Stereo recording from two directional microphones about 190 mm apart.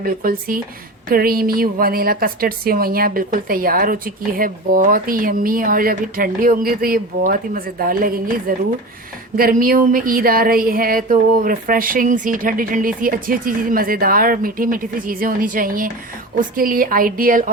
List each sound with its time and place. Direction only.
0.0 s a woman's voice: 50° right (ahead or behind)